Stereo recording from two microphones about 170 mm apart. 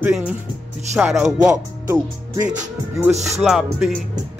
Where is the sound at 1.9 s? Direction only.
15° right (ahead or behind).